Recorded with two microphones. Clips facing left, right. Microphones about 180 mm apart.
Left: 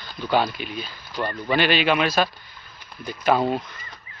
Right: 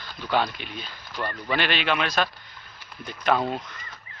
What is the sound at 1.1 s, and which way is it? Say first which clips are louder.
Speech: left 4 dB; 30° left (ahead or behind).